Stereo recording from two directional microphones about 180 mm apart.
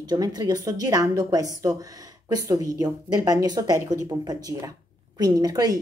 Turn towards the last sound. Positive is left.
turn(degrees=-20)  # may be behind; listen again after turning